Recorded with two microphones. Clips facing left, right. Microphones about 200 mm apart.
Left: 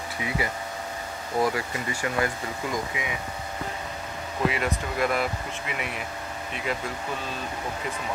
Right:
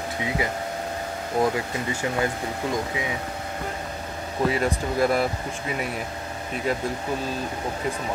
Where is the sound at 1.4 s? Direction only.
20° right (ahead or behind).